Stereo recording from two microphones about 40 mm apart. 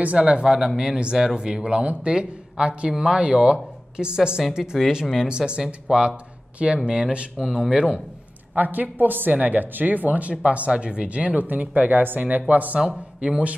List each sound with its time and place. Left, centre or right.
0.2 s speech: right
0.6 s speech: centre
8.5 s speech: right
12.8 s speech: right